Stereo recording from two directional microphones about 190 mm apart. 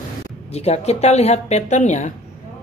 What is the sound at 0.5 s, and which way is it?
Speech, 35° left (ahead or behind).